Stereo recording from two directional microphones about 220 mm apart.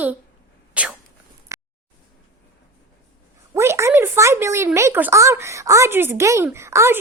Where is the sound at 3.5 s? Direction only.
10° right (ahead or behind).